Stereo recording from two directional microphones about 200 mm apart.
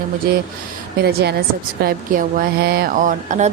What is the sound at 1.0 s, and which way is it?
A woman's voice, 55° right (ahead or behind).